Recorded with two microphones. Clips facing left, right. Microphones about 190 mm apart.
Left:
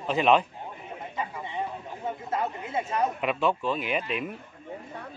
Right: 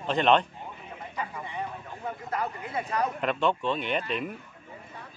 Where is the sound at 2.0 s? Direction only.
20° left (ahead or behind).